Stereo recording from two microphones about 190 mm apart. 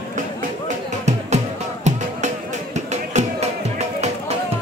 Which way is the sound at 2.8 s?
35° right (ahead or behind).